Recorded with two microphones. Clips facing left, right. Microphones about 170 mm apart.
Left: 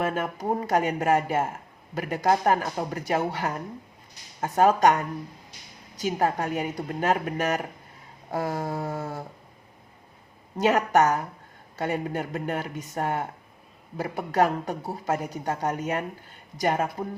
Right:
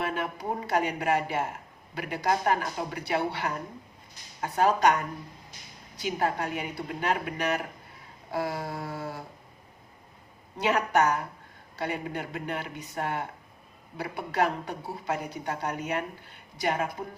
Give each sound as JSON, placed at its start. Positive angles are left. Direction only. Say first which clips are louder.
{"t": 0.0, "sound": "speech", "louder": "left 4 dB", "side_deg": 45}
{"t": 6.0, "sound": "speech", "louder": "left 3 dB", "side_deg": 45}
{"t": 10.6, "sound": "speech", "louder": "left 4 dB", "side_deg": 45}